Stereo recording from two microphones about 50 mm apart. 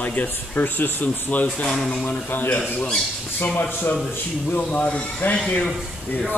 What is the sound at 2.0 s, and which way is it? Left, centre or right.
Speech, left.